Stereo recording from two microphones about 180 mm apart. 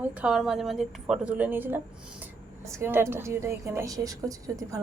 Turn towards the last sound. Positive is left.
turn(degrees=-20)  # may be behind; listen again after turning